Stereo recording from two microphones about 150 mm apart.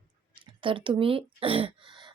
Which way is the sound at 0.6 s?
35° right (ahead or behind).